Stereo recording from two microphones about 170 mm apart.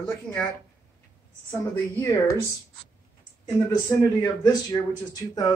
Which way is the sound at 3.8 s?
20° left (ahead or behind).